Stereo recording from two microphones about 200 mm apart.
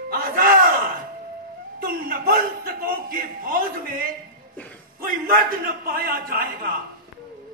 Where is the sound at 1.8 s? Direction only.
50° right (ahead or behind).